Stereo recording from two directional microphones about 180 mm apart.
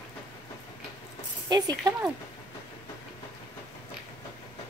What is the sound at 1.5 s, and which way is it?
Speech, 20° right (ahead or behind).